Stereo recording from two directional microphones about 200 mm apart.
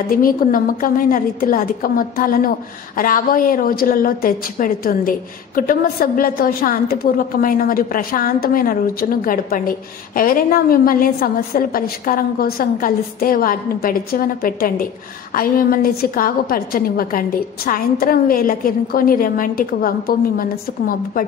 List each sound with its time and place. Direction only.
0.1 s a woman's voice: 45° left (ahead or behind)